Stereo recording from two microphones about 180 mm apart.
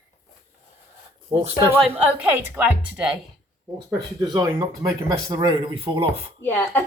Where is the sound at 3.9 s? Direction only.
20° right (ahead or behind).